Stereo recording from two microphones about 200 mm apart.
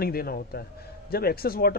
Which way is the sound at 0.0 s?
50° left (ahead or behind).